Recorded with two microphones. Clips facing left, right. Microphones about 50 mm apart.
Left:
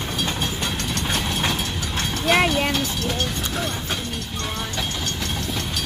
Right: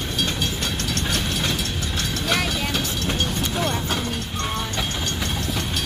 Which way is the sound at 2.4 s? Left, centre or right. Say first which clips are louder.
Left 5 dB; left.